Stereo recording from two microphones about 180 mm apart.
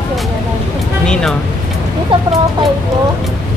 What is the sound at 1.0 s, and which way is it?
Speech, 5° left (ahead or behind).